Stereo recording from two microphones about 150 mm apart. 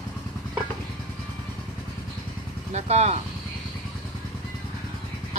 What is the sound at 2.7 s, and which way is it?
Speech, 50° right (ahead or behind).